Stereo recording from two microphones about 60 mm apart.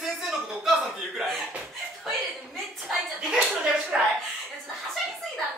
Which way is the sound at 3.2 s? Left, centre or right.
Centre.